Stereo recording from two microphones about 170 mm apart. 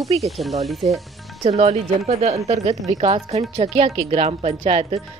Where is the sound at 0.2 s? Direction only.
Centre (ahead or behind).